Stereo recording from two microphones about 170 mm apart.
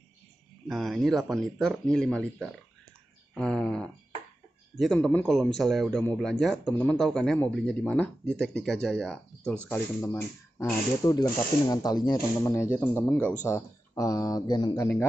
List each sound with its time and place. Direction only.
0.7 s speech: centre (ahead or behind); by 15.0 s 15° left (ahead or behind)